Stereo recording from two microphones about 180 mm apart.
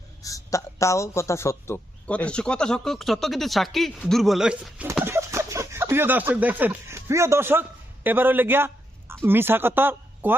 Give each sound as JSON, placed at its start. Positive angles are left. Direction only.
{"t": 0.2, "sound": "a man's voice", "side_deg": 20}
{"t": 5.0, "sound": "speech", "side_deg": -15}